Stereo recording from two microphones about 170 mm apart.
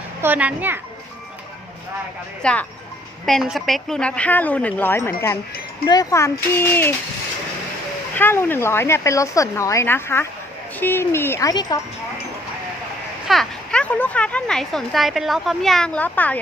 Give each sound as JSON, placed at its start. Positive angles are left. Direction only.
{"t": 0.2, "sound": "a child's voice", "side_deg": -10}
{"t": 2.4, "sound": "speech", "side_deg": 5}
{"t": 8.1, "sound": "speech", "side_deg": 15}
{"t": 13.2, "sound": "speech", "side_deg": 0}